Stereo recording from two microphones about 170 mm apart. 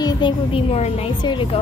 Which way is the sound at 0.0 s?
30° left (ahead or behind).